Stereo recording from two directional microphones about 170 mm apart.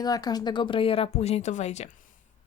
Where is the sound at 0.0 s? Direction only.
25° left (ahead or behind).